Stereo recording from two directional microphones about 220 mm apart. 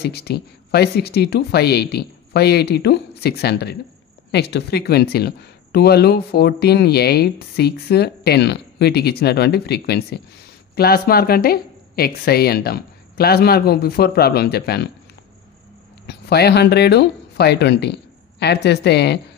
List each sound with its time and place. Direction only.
0.0 s speech: 45° left (ahead or behind)
16.1 s speech: 45° left (ahead or behind)